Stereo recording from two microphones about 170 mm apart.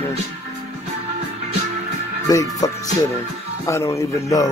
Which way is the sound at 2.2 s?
20° left (ahead or behind).